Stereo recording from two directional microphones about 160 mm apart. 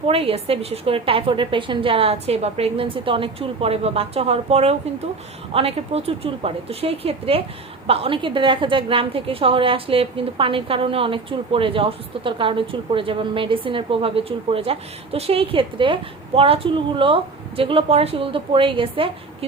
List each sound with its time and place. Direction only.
0.1 s a woman's voice: 35° right (ahead or behind)